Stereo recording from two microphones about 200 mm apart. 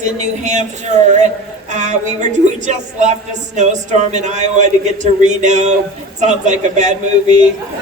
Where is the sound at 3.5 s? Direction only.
35° right (ahead or behind).